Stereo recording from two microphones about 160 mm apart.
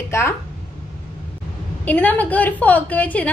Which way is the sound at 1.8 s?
10° left (ahead or behind).